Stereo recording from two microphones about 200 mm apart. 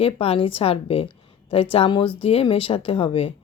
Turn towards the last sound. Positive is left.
turn(degrees=30)  # may be behind; listen again after turning